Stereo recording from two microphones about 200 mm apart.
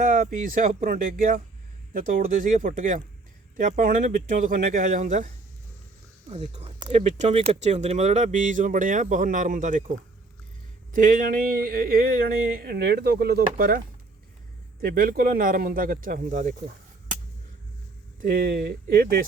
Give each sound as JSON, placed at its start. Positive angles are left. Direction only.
{"t": 0.0, "sound": "speech", "side_deg": -40}
{"t": 10.9, "sound": "speech", "side_deg": -40}
{"t": 18.2, "sound": "speech", "side_deg": -45}